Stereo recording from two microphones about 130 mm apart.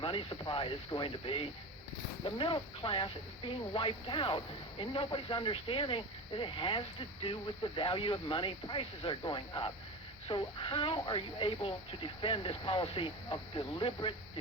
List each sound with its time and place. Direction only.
0.0 s speech: 40° left (ahead or behind)